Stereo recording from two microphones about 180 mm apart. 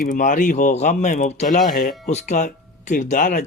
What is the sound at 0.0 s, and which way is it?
Speech, 45° left (ahead or behind).